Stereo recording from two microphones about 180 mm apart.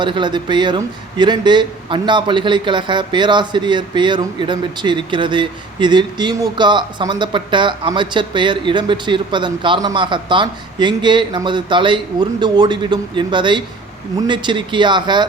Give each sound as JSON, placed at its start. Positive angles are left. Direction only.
{"t": 0.0, "sound": "speech", "side_deg": -25}